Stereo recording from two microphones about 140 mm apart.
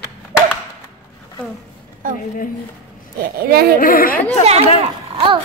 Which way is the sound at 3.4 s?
90° right.